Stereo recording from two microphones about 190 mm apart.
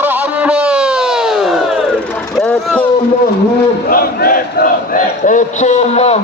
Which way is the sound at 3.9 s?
50° left (ahead or behind).